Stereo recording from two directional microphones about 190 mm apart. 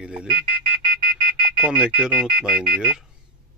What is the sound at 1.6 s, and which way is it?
Speech, 5° right (ahead or behind).